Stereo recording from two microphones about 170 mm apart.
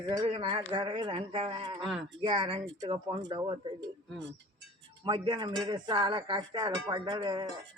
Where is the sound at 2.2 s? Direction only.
30° right (ahead or behind).